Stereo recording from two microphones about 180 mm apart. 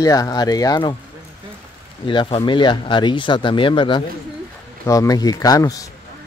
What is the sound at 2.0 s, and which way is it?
Speech, 25° left (ahead or behind).